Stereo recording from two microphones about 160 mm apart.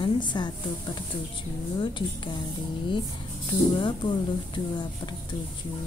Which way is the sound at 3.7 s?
30° left (ahead or behind).